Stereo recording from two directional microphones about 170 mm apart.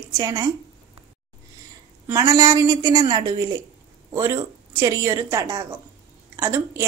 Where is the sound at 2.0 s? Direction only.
15° right (ahead or behind).